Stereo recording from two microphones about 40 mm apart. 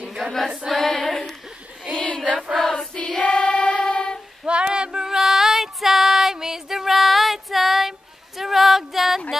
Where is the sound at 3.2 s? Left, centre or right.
Left.